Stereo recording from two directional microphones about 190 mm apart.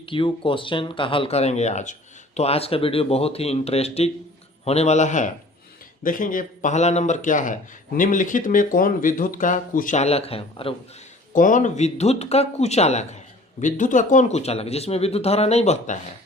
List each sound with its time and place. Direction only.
0.0 s speech: 25° left (ahead or behind)
11.3 s speech: 45° left (ahead or behind)